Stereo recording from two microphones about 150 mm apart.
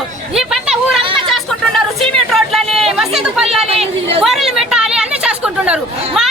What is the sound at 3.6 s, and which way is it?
Chatter, 40° right (ahead or behind).